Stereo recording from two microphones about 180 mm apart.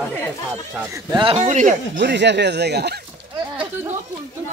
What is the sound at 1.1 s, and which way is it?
Speech, 30° right (ahead or behind).